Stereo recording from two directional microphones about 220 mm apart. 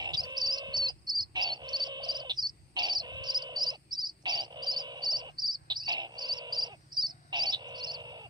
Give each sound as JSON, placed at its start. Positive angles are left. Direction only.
{"t": 0.0, "sound": "cricket", "side_deg": -20}
{"t": 5.7, "sound": "bird", "side_deg": -20}